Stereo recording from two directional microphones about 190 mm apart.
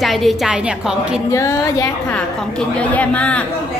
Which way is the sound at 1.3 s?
15° left (ahead or behind).